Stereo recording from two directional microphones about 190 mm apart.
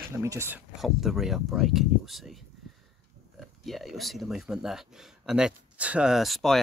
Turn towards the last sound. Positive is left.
turn(degrees=0)  # may be behind; listen again after turning